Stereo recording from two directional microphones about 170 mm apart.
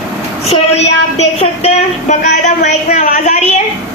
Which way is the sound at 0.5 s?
40° left (ahead or behind).